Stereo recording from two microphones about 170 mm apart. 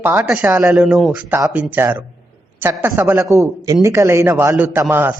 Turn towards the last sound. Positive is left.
turn(degrees=-10)  # may be behind; listen again after turning